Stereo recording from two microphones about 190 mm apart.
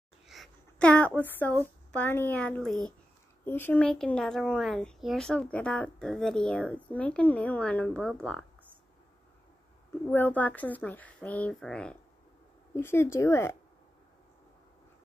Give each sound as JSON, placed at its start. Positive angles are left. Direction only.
{"t": 0.3, "sound": "a sound", "side_deg": 0}
{"t": 1.9, "sound": "speech", "side_deg": 10}
{"t": 10.0, "sound": "speech", "side_deg": 10}